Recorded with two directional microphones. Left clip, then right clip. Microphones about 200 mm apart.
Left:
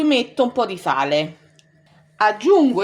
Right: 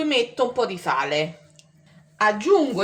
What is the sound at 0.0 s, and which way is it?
Speech, 35° left (ahead or behind).